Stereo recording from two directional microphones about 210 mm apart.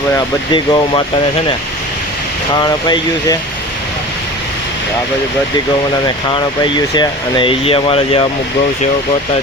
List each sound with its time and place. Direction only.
0.5 s speech: 20° left (ahead or behind)
2.6 s speech: 20° left (ahead or behind)
6.1 s speech: 20° left (ahead or behind)